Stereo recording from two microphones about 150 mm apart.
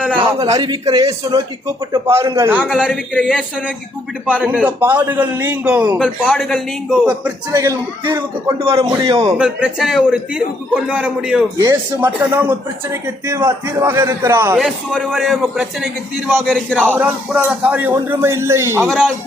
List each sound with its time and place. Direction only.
0.4 s a man's voice: 30° right (ahead or behind)
2.5 s a man's voice: 5° right (ahead or behind)
4.4 s speech: 10° right (ahead or behind)
6.0 s a man's voice: centre (ahead or behind)
7.5 s a man's voice: 20° right (ahead or behind)
8.6 s a man's voice: 40° right (ahead or behind)
8.9 s a man's voice: 25° right (ahead or behind)
9.4 s a man's voice: 5° right (ahead or behind)
11.5 s a man's voice: 20° right (ahead or behind)
14.5 s a man's voice: centre (ahead or behind)
16.9 s speech: 10° right (ahead or behind)
18.9 s a man's voice: 5° left (ahead or behind)